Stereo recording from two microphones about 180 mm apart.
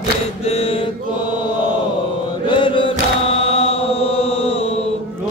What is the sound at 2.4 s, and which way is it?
Mantra, 30° left (ahead or behind).